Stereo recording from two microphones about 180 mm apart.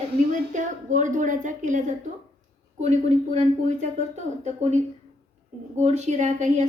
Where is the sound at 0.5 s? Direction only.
45° right (ahead or behind).